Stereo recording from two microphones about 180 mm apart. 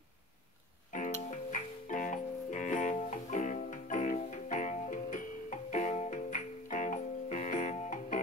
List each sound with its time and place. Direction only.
0.9 s music: 45° left (ahead or behind)